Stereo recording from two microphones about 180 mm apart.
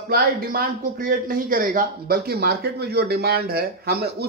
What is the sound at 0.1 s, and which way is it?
Speech, 55° right (ahead or behind).